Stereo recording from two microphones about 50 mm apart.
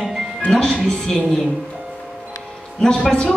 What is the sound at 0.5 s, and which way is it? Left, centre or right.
Speech, centre.